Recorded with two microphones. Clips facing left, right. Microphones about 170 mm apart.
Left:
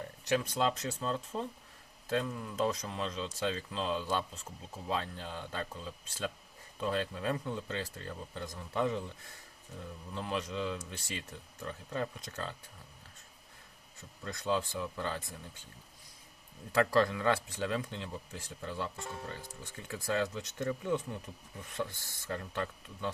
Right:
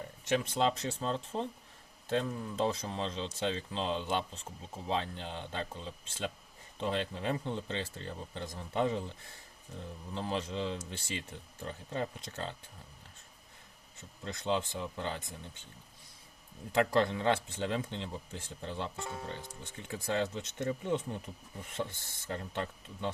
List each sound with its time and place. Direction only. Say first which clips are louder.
0.3 s speech: right 1 dB; 25° right (ahead or behind)
14.3 s speech: even; 25° right (ahead or behind)
16.7 s speech: even; 25° right (ahead or behind)